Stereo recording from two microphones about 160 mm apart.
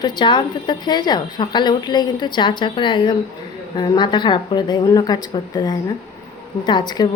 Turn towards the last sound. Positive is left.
turn(degrees=25)  # may be behind; listen again after turning